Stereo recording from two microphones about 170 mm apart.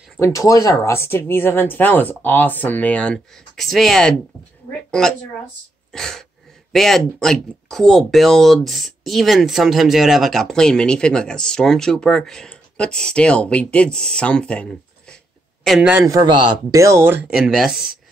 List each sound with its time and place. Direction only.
0.2 s speech: 20° left (ahead or behind); by 4.1 s centre (ahead or behind)
5.9 s speech: 5° left (ahead or behind)
15.9 s speech: 20° right (ahead or behind)
17.3 s speech: 5° right (ahead or behind)